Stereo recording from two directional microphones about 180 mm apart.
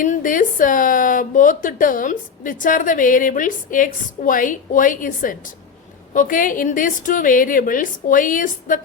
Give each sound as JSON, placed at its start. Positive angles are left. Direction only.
{"t": 0.0, "sound": "speech", "side_deg": 50}